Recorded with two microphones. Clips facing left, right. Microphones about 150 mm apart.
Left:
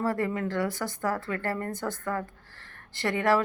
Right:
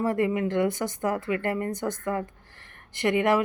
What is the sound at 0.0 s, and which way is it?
A woman's voice, 15° right (ahead or behind).